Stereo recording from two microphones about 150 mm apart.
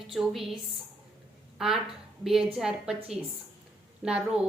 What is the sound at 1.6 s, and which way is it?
A woman's voice, 5° right (ahead or behind).